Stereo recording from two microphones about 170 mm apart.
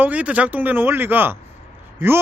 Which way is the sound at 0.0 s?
10° right (ahead or behind).